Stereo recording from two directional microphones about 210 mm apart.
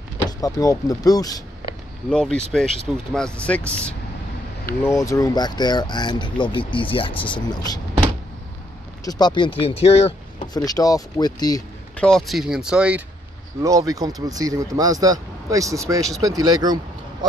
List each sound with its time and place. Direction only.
0.4 s speech: 15° left (ahead or behind)
2.0 s speech: 5° left (ahead or behind); by 7.8 s 20° left (ahead or behind)
9.0 s speech: 20° left (ahead or behind)
10.5 s speech: 20° left (ahead or behind)
12.0 s speech: centre (ahead or behind)
13.6 s speech: 15° right (ahead or behind)